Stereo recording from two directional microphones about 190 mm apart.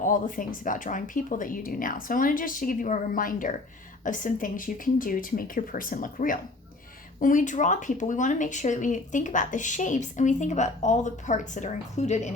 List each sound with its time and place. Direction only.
0.0 s speech: 45° left (ahead or behind)